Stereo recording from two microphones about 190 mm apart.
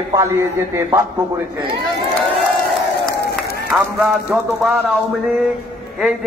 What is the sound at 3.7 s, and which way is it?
A man's voice, 5° right (ahead or behind).